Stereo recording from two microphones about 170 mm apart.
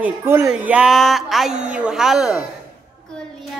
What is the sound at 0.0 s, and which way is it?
Speech, 15° right (ahead or behind).